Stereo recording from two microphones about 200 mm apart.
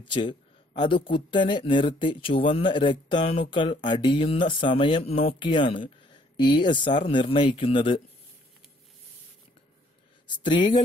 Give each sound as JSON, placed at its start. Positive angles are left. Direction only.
{"t": 0.1, "sound": "speech", "side_deg": 25}
{"t": 3.2, "sound": "speech", "side_deg": 35}
{"t": 3.4, "sound": "speech", "side_deg": 25}
{"t": 10.2, "sound": "speech", "side_deg": 20}